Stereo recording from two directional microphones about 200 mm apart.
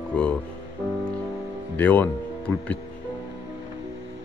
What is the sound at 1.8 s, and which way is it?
Speech, 10° left (ahead or behind).